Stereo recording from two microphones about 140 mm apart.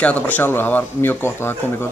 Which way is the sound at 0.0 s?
10° left (ahead or behind).